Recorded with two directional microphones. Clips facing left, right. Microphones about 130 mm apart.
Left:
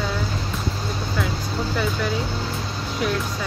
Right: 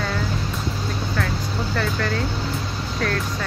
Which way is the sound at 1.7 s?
10° left (ahead or behind).